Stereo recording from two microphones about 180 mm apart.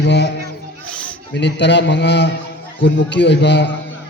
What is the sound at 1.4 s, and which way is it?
A man's voice, 75° left (ahead or behind).